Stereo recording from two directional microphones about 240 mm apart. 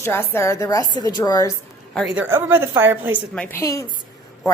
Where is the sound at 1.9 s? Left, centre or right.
Centre.